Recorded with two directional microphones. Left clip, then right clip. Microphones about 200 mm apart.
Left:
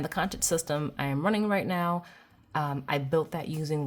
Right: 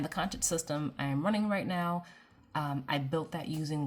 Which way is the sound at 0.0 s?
30° left (ahead or behind).